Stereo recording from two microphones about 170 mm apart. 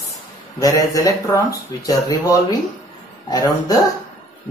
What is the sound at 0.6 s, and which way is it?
Speech, 20° left (ahead or behind).